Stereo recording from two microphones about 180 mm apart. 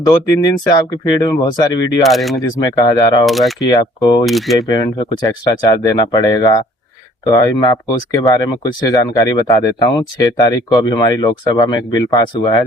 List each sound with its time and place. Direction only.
0.1 s speech: 20° left (ahead or behind)
2.0 s speech: centre (ahead or behind)
2.4 s speech: 20° left (ahead or behind)
3.2 s speech: centre (ahead or behind)
3.6 s speech: 25° left (ahead or behind)
4.3 s speech: centre (ahead or behind)
4.5 s speech: 20° left (ahead or behind)